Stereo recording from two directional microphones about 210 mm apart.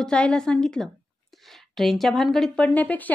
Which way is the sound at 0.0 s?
5° left (ahead or behind).